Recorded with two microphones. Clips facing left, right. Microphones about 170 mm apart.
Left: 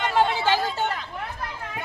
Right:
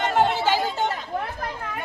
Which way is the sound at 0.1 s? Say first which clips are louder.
Right 1 dB; 50° right (ahead or behind).